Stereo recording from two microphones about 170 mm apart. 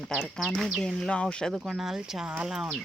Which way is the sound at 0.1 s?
Centre (ahead or behind).